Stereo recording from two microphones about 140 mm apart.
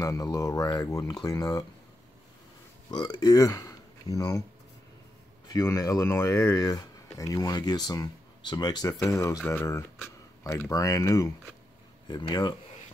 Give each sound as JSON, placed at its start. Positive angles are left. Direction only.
{"t": 0.0, "sound": "speech", "side_deg": 25}
{"t": 2.9, "sound": "speech", "side_deg": 30}
{"t": 5.5, "sound": "speech", "side_deg": 25}